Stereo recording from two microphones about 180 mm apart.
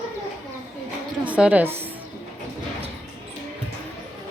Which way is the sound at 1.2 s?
5° right (ahead or behind).